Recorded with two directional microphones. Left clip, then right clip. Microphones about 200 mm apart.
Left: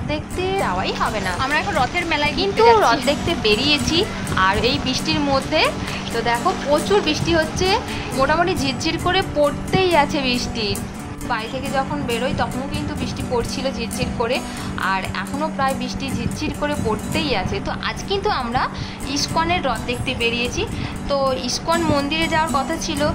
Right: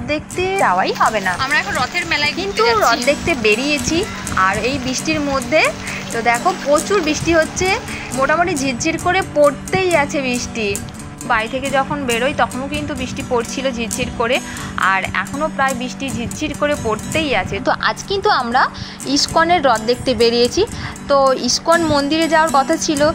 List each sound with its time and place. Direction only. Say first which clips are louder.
0.1 s speech: right 4 dB; 10° right (ahead or behind)
1.4 s speech: left 2 dB; 5° left (ahead or behind)
3.1 s speech: right 4 dB; 10° right (ahead or behind)
11.2 s speech: right 7 dB; 15° right (ahead or behind)
17.6 s a woman's voice: right 7 dB; 20° right (ahead or behind)